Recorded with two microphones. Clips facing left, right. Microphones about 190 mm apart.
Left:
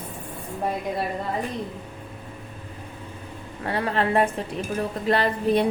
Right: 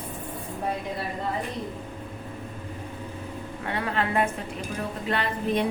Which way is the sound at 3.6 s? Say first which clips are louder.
Left 4 dB; 35° left (ahead or behind).